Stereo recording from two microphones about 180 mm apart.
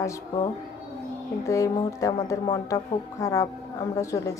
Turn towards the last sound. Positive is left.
turn(degrees=15)  # may be behind; listen again after turning